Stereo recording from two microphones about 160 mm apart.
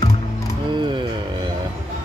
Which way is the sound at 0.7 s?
30° right (ahead or behind).